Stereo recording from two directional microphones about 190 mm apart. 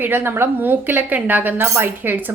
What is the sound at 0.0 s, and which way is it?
A woman's voice, 10° right (ahead or behind).